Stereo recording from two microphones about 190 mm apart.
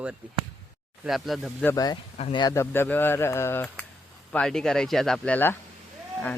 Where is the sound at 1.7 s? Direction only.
20° left (ahead or behind).